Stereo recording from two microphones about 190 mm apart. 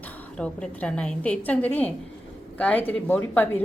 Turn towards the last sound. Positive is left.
turn(degrees=10)  # may be behind; listen again after turning